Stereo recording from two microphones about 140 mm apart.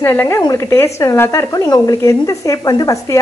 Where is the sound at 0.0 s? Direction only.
15° left (ahead or behind).